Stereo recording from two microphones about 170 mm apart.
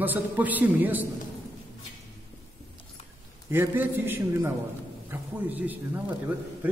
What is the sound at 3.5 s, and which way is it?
A man's voice, 15° right (ahead or behind).